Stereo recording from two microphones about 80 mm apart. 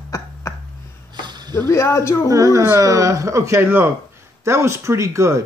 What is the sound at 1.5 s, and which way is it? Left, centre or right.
Speech, left.